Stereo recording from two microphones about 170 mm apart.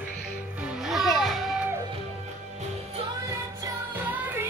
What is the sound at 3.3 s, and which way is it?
Music, 15° right (ahead or behind).